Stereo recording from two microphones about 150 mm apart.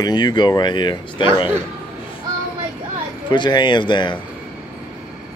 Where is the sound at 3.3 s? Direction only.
30° left (ahead or behind).